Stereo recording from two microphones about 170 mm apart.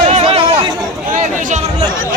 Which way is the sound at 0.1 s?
35° right (ahead or behind).